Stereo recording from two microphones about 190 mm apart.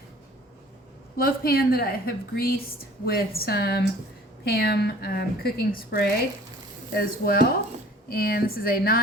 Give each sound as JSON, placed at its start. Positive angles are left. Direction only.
{"t": 1.1, "sound": "a woman's voice", "side_deg": 50}